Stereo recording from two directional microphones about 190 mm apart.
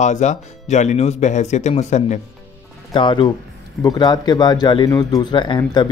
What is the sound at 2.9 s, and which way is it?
A man's voice, 25° left (ahead or behind).